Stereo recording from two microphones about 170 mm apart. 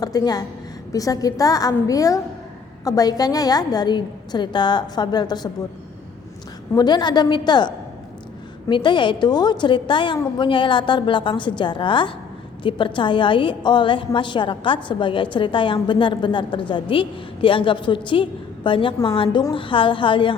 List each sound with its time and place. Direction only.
0.0 s a woman's voice: 20° left (ahead or behind)
6.7 s a woman's voice: 25° left (ahead or behind)
8.7 s a woman's voice: 25° left (ahead or behind)